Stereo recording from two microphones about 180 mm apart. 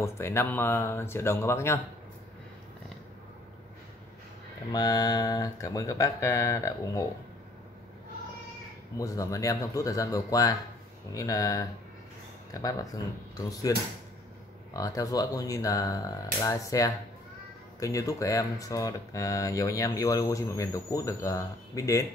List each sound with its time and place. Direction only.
0.0 s speech: 15° left (ahead or behind)
4.7 s speech: 20° left (ahead or behind)
8.9 s speech: 20° left (ahead or behind)
12.6 s speech: 20° left (ahead or behind)